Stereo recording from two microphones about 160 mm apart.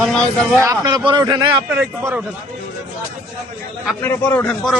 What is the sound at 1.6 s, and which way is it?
Speech, 10° right (ahead or behind).